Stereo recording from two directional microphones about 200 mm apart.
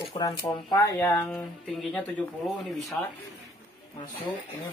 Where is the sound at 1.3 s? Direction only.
Centre (ahead or behind).